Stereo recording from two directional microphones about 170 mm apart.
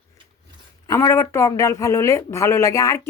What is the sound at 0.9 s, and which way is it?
Speech, 20° left (ahead or behind).